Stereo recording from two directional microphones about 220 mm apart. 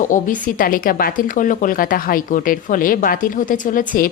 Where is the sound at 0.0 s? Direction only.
35° left (ahead or behind).